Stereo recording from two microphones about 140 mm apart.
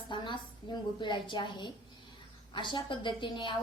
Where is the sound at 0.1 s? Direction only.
35° left (ahead or behind).